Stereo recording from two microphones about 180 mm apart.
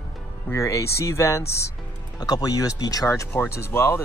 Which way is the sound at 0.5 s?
15° left (ahead or behind).